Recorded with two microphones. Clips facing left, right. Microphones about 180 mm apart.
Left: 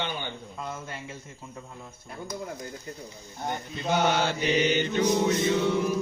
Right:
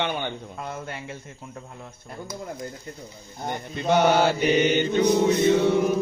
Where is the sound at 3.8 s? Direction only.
55° right (ahead or behind).